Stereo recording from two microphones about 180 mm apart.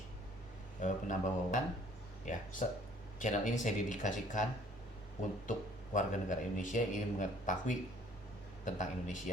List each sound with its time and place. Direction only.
0.8 s speech: 45° left (ahead or behind)
5.5 s speech: 45° left (ahead or behind)